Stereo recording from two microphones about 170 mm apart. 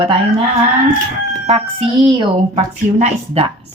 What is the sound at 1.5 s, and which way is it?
A woman's voice, 30° right (ahead or behind).